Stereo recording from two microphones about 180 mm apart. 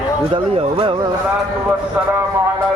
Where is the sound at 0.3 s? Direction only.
30° right (ahead or behind).